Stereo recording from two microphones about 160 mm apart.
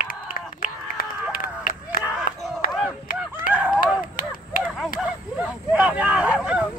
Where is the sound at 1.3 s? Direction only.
65° left (ahead or behind).